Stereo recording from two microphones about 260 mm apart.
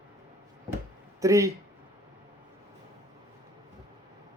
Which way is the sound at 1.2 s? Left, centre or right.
Centre.